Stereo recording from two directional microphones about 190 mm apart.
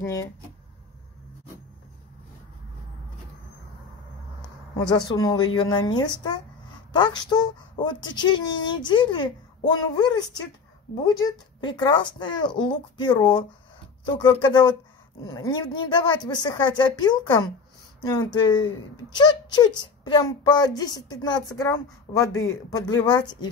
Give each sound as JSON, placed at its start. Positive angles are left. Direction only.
{"t": 0.0, "sound": "speech", "side_deg": 15}
{"t": 4.7, "sound": "speech", "side_deg": 20}